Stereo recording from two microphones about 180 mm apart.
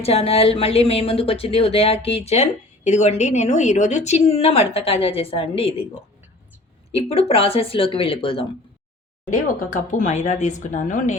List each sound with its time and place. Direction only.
0.0 s speech: 35° left (ahead or behind)
6.9 s speech: 35° left (ahead or behind)
9.5 s speech: 45° left (ahead or behind)